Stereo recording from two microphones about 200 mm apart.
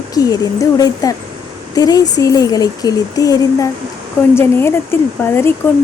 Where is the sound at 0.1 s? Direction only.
20° left (ahead or behind).